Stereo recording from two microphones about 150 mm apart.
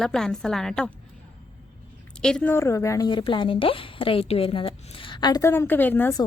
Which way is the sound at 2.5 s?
20° left (ahead or behind).